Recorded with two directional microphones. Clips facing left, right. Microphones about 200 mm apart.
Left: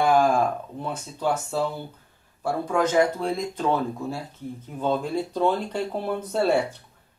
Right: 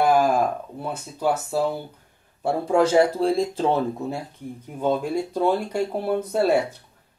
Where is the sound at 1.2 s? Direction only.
10° right (ahead or behind).